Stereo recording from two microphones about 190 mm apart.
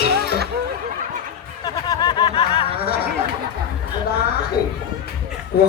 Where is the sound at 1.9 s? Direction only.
20° left (ahead or behind).